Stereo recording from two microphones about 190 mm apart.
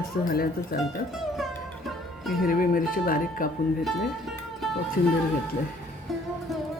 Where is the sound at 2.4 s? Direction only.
50° left (ahead or behind).